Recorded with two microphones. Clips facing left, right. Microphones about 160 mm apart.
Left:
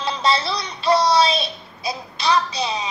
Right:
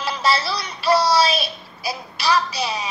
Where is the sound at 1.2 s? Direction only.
25° left (ahead or behind).